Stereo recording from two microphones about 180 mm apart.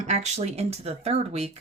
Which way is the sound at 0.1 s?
35° right (ahead or behind).